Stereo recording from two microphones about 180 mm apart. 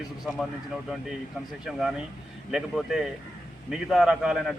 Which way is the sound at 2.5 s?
Centre (ahead or behind).